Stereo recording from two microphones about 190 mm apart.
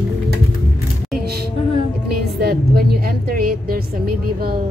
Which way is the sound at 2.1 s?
55° right (ahead or behind).